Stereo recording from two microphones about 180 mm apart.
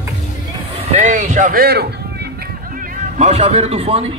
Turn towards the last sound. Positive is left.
turn(degrees=-35)  # may be behind; listen again after turning